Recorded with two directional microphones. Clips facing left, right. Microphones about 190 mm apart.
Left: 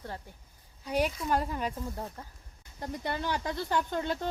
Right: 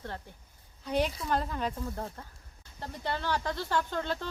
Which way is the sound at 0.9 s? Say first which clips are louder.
Left 1 dB; 10° left (ahead or behind).